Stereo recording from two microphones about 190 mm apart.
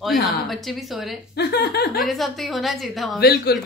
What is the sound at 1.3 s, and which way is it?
Speech, 60° left (ahead or behind).